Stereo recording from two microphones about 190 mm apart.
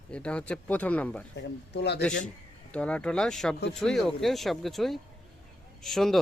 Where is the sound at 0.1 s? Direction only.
5° left (ahead or behind).